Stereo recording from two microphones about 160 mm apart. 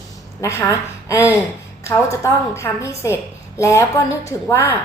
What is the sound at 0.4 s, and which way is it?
A woman's voice, 20° left (ahead or behind).